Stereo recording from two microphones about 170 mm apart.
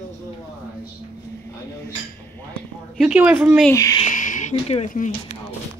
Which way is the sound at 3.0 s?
5° right (ahead or behind).